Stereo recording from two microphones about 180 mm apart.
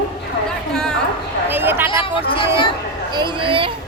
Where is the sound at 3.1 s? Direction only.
25° right (ahead or behind).